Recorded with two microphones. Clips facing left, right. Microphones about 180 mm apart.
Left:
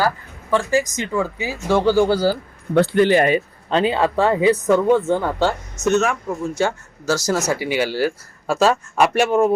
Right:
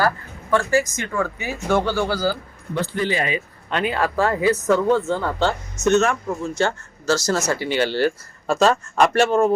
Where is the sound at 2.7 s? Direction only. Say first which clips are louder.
Left 9 dB; 65° left (ahead or behind).